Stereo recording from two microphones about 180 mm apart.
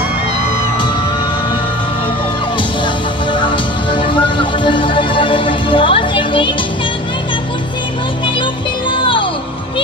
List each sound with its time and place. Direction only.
3.3 s music: 25° left (ahead or behind)
8.9 s music: 30° left (ahead or behind)